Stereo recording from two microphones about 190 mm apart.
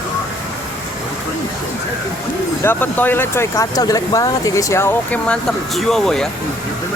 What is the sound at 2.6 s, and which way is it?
Speech, 10° left (ahead or behind).